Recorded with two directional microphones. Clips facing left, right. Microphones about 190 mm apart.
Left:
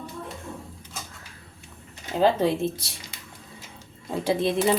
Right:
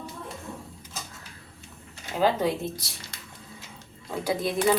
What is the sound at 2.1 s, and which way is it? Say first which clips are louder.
Speech: left 3 dB; 25° left (ahead or behind).